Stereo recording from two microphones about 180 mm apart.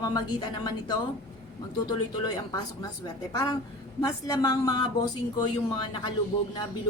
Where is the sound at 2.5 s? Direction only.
20° left (ahead or behind).